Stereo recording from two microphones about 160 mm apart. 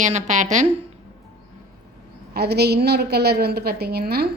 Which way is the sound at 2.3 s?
90° right.